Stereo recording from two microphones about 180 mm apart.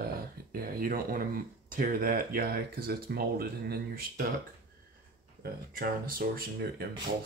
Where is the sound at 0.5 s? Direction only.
55° right (ahead or behind).